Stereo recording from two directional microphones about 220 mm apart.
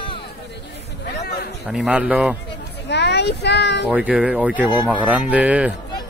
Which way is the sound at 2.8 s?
50° left (ahead or behind).